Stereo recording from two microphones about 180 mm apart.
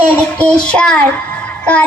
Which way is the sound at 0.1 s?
5° left (ahead or behind).